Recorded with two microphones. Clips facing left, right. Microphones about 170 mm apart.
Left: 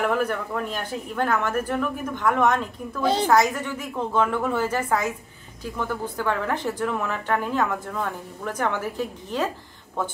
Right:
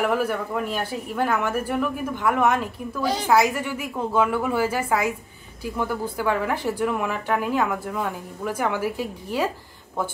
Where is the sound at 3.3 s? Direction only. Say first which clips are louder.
Right 4 dB; 10° right (ahead or behind).